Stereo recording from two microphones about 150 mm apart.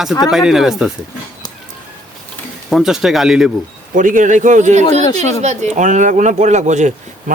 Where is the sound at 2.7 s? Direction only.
5° right (ahead or behind).